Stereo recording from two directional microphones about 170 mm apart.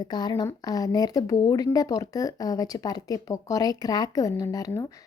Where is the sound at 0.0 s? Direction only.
25° left (ahead or behind).